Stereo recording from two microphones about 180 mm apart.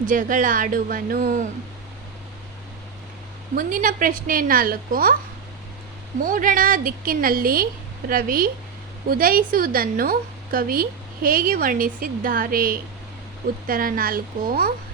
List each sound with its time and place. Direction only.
0.0 s a woman's voice: 50° right (ahead or behind)
3.5 s a woman's voice: 50° right (ahead or behind)
6.2 s a woman's voice: 50° right (ahead or behind)